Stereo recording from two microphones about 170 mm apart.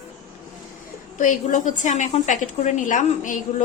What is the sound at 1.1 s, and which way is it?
A woman's voice, 50° left (ahead or behind).